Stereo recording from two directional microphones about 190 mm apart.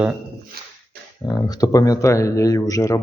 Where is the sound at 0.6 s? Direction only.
55° right (ahead or behind).